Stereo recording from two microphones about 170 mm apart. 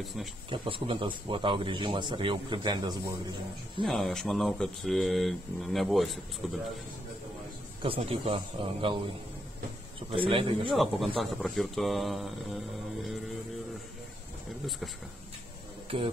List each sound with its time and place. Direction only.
0.0 s speech: centre (ahead or behind)
0.5 s speech: 30° right (ahead or behind)
3.8 s speech: centre (ahead or behind)
7.8 s speech: 35° right (ahead or behind)
10.1 s speech: 30° right (ahead or behind)
10.7 s speech: centre (ahead or behind)
15.9 s speech: 35° right (ahead or behind)